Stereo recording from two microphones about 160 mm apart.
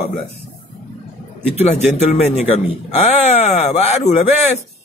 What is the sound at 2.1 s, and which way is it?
A man's voice, 40° left (ahead or behind).